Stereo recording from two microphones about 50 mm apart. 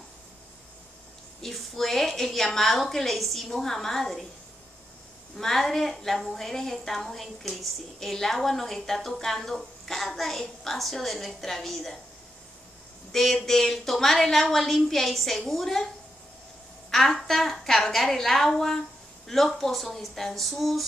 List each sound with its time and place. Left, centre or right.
1.4 s a woman's voice: centre
5.4 s a woman's voice: centre
13.1 s a woman's voice: centre
16.9 s a woman's voice: centre